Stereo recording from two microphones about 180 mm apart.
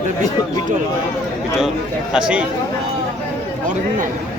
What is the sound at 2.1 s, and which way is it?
Speech, 5° right (ahead or behind).